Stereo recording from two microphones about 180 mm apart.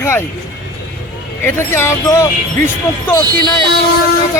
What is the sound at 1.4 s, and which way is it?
Speech, 15° left (ahead or behind).